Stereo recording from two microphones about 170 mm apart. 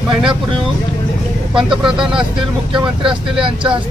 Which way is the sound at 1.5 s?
5° right (ahead or behind).